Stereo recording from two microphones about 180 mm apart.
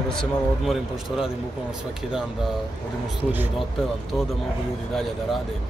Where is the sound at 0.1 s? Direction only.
Centre (ahead or behind).